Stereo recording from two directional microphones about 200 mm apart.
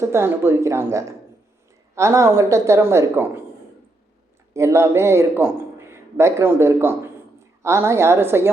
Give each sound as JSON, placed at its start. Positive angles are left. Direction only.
{"t": 0.0, "sound": "a woman's voice", "side_deg": -10}
{"t": 4.5, "sound": "a man's voice", "side_deg": -15}